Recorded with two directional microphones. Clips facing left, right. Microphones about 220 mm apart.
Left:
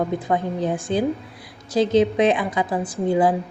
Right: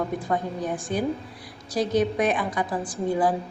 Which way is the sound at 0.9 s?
30° left (ahead or behind).